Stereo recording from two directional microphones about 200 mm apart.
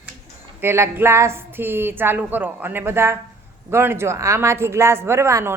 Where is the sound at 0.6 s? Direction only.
10° right (ahead or behind).